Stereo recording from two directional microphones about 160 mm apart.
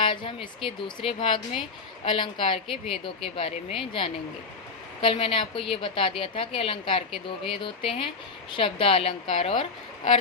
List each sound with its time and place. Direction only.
0.0 s a woman's voice: 30° left (ahead or behind)
2.6 s speech: centre (ahead or behind)
3.2 s a woman's voice: 35° left (ahead or behind)
4.9 s a woman's voice: 35° left (ahead or behind)